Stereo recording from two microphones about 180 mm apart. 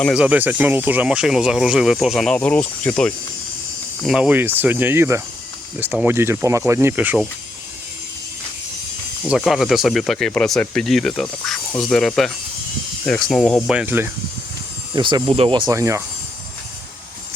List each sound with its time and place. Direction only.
0.0 s speech: 5° right (ahead or behind)
4.0 s speech: 5° right (ahead or behind)
9.2 s speech: 5° right (ahead or behind)
13.7 s speech: 10° right (ahead or behind)
14.9 s speech: 25° right (ahead or behind)
15.7 s speech: 15° right (ahead or behind)